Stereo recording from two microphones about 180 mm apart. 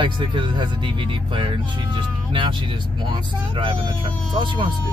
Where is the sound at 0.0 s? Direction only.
25° right (ahead or behind).